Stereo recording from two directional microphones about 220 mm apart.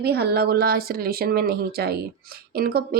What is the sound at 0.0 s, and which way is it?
Speech, 45° right (ahead or behind).